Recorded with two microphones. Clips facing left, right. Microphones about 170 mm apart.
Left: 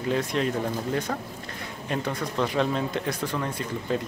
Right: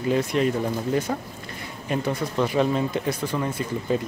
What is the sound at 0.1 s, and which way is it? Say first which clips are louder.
Speech: right 4 dB; 5° right (ahead or behind).